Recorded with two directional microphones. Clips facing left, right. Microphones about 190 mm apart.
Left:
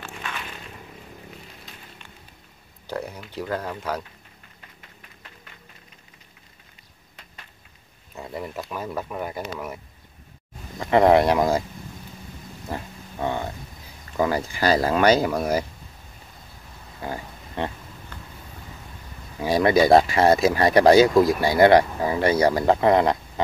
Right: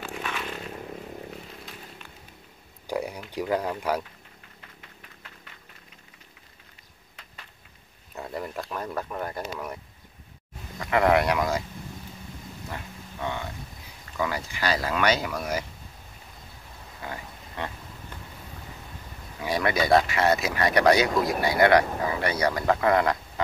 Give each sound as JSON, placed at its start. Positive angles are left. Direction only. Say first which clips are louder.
{"t": 2.9, "sound": "speech", "louder": "right 1 dB", "side_deg": -10}
{"t": 8.1, "sound": "speech", "louder": "left 1 dB", "side_deg": 0}
{"t": 10.9, "sound": "speech", "louder": "left 5 dB", "side_deg": 30}
{"t": 12.7, "sound": "a sound", "louder": "left 8 dB", "side_deg": 35}
{"t": 14.1, "sound": "speech", "louder": "left 6 dB", "side_deg": 35}
{"t": 17.0, "sound": "a sound", "louder": "left 6 dB", "side_deg": 30}
{"t": 19.4, "sound": "speech", "louder": "left 7 dB", "side_deg": 30}